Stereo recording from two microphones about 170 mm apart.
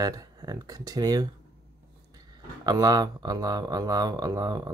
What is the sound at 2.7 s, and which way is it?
Speech, 20° right (ahead or behind).